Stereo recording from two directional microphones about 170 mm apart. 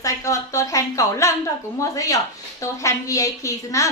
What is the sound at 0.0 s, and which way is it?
A woman's voice, 20° left (ahead or behind).